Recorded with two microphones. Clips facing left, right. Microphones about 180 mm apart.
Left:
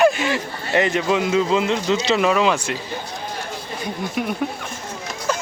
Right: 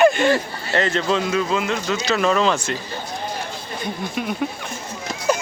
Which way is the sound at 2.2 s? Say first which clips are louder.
Left 1 dB; 10° left (ahead or behind).